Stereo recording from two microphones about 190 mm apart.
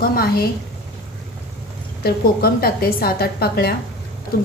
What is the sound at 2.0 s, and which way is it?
A woman's voice, 55° left (ahead or behind).